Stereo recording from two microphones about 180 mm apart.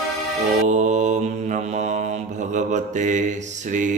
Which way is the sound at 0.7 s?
40° right (ahead or behind).